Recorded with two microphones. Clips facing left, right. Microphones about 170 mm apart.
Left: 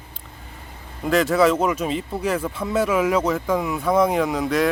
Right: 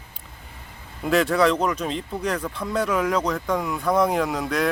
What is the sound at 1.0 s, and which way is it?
Speech, centre (ahead or behind).